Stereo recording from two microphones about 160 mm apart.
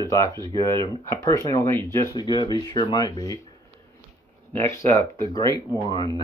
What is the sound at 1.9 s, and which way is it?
Speech, 25° left (ahead or behind).